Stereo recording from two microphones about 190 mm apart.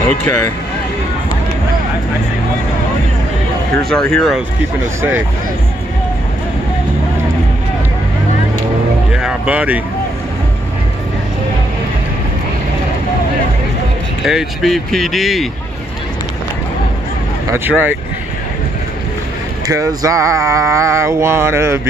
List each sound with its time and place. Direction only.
0.2 s speech: 10° left (ahead or behind)
3.9 s speech: 5° left (ahead or behind)
9.1 s speech: 5° right (ahead or behind)
14.2 s speech: centre (ahead or behind)
17.5 s a sound: 10° right (ahead or behind)
19.7 s a sound: 15° right (ahead or behind)